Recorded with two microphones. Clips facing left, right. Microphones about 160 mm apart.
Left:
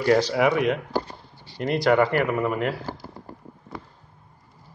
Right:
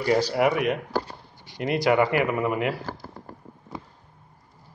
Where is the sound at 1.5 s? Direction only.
10° right (ahead or behind).